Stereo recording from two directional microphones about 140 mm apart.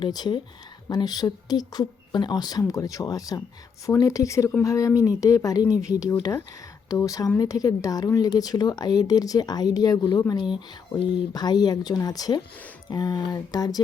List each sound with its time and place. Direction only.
0.0 s speech: 30° left (ahead or behind)